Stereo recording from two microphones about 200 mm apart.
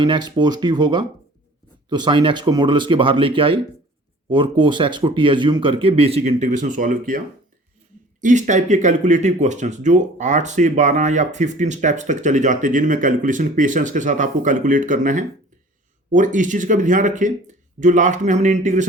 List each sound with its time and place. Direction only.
0.0 s speech: 20° right (ahead or behind); by 7.2 s 40° right (ahead or behind)
8.2 s speech: 40° right (ahead or behind)